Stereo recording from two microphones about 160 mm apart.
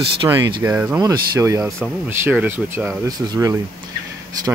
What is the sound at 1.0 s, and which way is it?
Speech, 20° right (ahead or behind).